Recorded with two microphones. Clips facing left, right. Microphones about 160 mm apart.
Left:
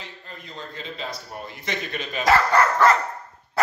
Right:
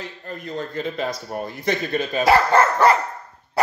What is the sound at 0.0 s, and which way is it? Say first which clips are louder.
A man's voice: right 8 dB; 50° right (ahead or behind).